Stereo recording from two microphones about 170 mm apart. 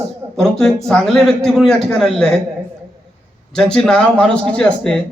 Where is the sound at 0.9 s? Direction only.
Centre (ahead or behind).